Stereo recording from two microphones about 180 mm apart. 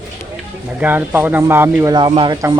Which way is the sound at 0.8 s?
10° right (ahead or behind).